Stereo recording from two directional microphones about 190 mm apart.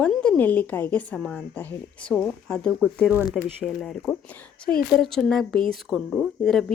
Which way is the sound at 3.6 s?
5° left (ahead or behind).